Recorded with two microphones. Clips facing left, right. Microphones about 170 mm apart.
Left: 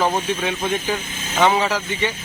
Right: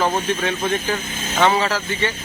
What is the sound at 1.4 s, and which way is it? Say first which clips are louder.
Speech: even; 10° left (ahead or behind).